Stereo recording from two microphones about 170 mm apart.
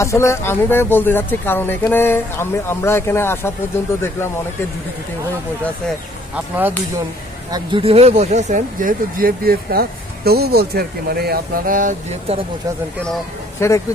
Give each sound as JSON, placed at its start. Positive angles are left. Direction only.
{"t": 0.0, "sound": "speech", "side_deg": 15}
{"t": 6.3, "sound": "speech", "side_deg": -10}
{"t": 7.5, "sound": "speech", "side_deg": -30}
{"t": 13.6, "sound": "speech", "side_deg": 15}